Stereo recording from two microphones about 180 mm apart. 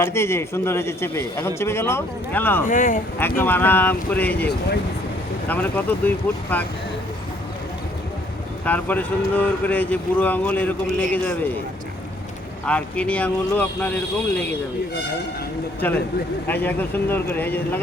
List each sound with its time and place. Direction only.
0.0 s speech: 15° left (ahead or behind)
2.6 s speech: 45° left (ahead or behind)
3.2 s speech: 10° left (ahead or behind)
5.5 s speech: 10° left (ahead or behind)
8.6 s speech: 10° left (ahead or behind)
12.6 s speech: 5° left (ahead or behind)
16.5 s speech: 10° left (ahead or behind)